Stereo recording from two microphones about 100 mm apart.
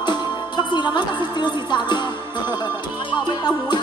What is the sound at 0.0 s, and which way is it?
Music, 50° left (ahead or behind).